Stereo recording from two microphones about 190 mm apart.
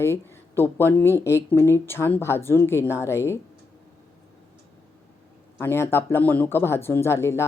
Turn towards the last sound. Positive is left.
turn(degrees=15)  # may be behind; listen again after turning